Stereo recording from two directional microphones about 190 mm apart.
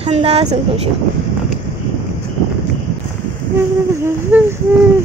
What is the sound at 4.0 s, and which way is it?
Speech, 5° right (ahead or behind).